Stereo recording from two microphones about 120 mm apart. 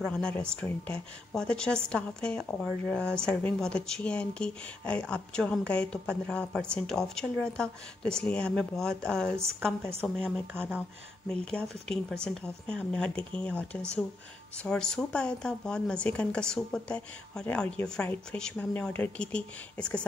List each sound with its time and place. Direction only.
0.0 s a woman's voice: 10° left (ahead or behind)
11.6 s speech: 20° right (ahead or behind)
12.1 s a woman's voice: 5° left (ahead or behind)